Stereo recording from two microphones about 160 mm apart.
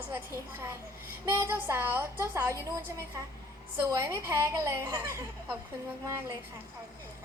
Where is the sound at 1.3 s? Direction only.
15° right (ahead or behind).